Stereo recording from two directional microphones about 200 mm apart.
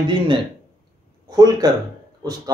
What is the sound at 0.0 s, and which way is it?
A man's voice, 25° right (ahead or behind).